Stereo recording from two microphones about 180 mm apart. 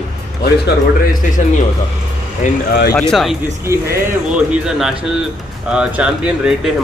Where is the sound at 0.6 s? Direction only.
50° left (ahead or behind).